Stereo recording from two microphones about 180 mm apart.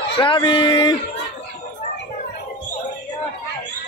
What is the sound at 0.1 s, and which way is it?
Speech, 30° left (ahead or behind).